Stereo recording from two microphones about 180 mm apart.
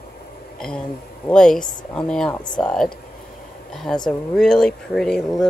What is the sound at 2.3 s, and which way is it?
Speech, 25° left (ahead or behind).